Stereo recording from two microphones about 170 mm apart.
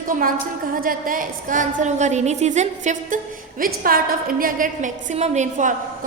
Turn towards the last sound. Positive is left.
turn(degrees=-45)  # may be behind; listen again after turning